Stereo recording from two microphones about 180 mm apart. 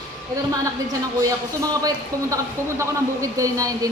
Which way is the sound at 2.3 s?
15° right (ahead or behind).